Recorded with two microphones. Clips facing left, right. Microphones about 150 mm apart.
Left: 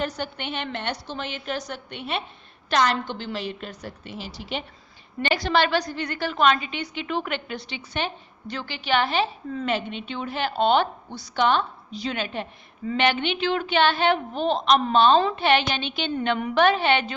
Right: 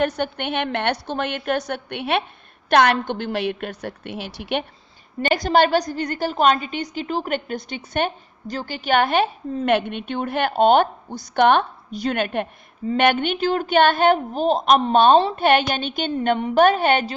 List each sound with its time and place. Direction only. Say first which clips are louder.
0.2 s a woman's voice: right 7 dB; 55° right (ahead or behind)
5.2 s a woman's voice: right 5 dB; 45° right (ahead or behind)